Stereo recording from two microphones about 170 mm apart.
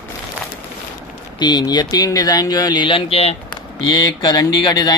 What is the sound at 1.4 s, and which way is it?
Speech, 25° left (ahead or behind).